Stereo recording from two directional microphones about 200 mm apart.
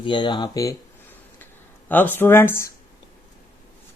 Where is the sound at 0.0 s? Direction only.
25° left (ahead or behind).